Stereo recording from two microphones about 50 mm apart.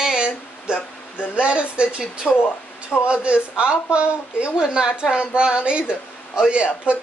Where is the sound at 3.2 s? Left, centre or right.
Right.